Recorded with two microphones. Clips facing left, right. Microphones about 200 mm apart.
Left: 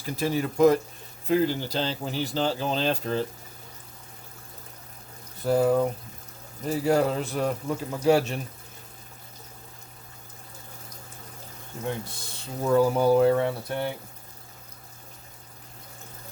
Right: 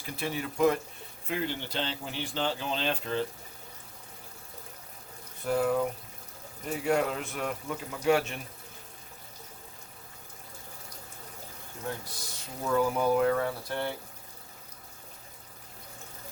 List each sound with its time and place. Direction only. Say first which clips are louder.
0.0 s a man's voice: left 7 dB; 40° left (ahead or behind)
5.5 s a man's voice: left 5 dB; 40° left (ahead or behind)
11.9 s speech: left 5 dB; 25° left (ahead or behind)